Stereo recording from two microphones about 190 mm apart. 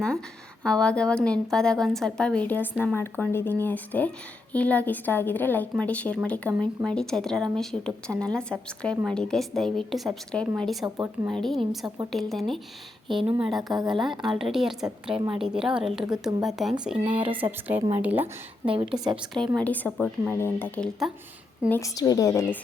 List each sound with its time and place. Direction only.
0.6 s a woman's voice: 5° left (ahead or behind)
10.8 s speech: 15° right (ahead or behind)
11.3 s a woman's voice: centre (ahead or behind)
21.7 s a woman's voice: 15° left (ahead or behind)